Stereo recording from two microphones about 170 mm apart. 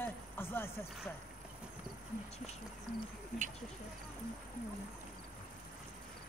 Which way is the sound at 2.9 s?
50° right (ahead or behind).